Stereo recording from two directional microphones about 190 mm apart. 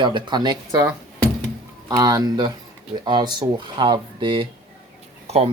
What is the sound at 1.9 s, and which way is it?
Speech, 20° right (ahead or behind).